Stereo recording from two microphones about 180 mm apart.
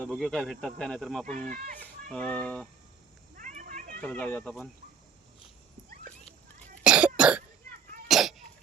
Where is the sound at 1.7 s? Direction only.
5° left (ahead or behind).